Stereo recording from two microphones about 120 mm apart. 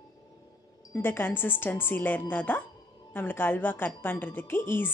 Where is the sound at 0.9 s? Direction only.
20° left (ahead or behind).